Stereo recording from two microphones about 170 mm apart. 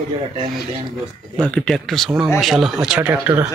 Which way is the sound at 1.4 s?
5° left (ahead or behind).